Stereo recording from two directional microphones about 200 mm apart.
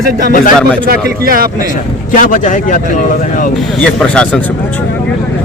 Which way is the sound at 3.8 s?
5° left (ahead or behind).